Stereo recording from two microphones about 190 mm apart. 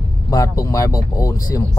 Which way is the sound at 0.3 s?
15° left (ahead or behind).